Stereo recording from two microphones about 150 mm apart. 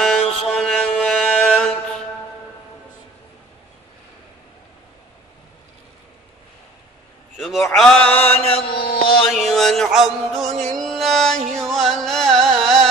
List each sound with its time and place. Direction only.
0.0 s mantra: 5° left (ahead or behind)
7.3 s a sound: centre (ahead or behind)
7.7 s mantra: 5° left (ahead or behind)
8.5 s mantra: 40° left (ahead or behind)
8.8 s music: 90° left
9.3 s music: centre (ahead or behind)